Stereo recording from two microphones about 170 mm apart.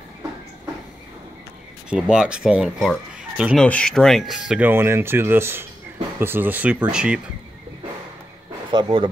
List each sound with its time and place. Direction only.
1.9 s speech: 5° right (ahead or behind)
8.7 s speech: 25° right (ahead or behind)